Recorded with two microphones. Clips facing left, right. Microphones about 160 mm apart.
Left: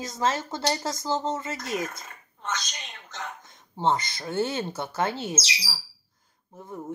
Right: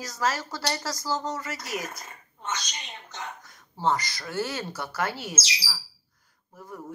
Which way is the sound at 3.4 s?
25° left (ahead or behind).